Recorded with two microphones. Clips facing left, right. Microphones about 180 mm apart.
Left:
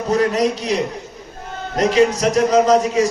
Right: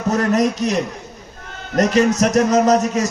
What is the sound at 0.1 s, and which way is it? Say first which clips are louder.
A man's voice: even; 45° right (ahead or behind).